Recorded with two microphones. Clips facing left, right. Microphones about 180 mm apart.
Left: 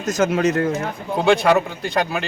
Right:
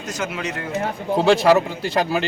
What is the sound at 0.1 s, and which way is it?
Speech, 45° left (ahead or behind).